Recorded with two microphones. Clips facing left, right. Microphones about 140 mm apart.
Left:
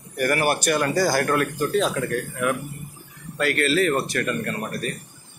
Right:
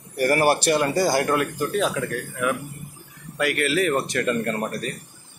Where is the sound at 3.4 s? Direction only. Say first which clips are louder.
Left 1 dB; 15° right (ahead or behind).